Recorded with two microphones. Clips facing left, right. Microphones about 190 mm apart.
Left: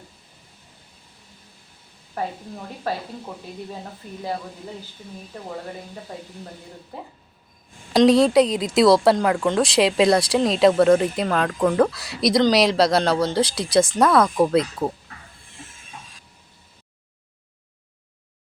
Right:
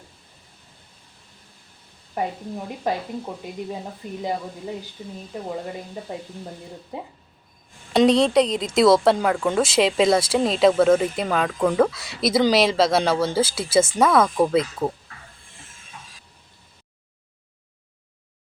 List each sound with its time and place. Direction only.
2.2 s speech: 15° right (ahead or behind)
5.3 s speech: 15° right (ahead or behind)
7.9 s speech: centre (ahead or behind)